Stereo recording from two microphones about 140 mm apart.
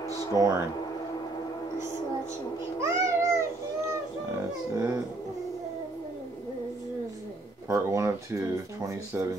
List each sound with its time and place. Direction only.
0.1 s speech: 25° right (ahead or behind)
2.8 s babbling: 20° right (ahead or behind)
4.7 s speech: 25° right (ahead or behind)
7.6 s speech: 20° right (ahead or behind)